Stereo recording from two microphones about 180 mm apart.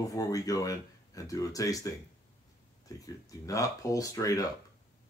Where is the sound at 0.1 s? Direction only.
20° left (ahead or behind).